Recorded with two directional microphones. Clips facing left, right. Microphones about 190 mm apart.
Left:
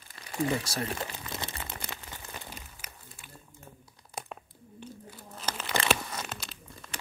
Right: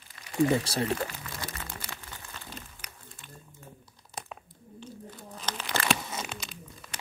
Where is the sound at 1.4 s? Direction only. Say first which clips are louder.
Left 1 dB; 25° left (ahead or behind).